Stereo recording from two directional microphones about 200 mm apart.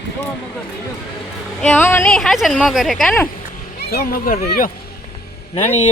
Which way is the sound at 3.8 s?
50° left (ahead or behind).